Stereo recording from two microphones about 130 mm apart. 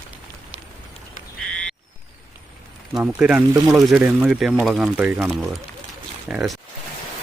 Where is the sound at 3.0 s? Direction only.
10° right (ahead or behind).